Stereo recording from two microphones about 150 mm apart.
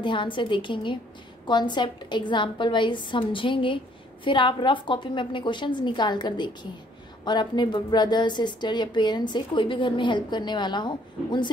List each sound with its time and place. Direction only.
0.0 s a woman's voice: 30° left (ahead or behind)